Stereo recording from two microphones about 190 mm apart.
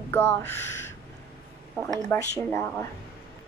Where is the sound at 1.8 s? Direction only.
15° left (ahead or behind).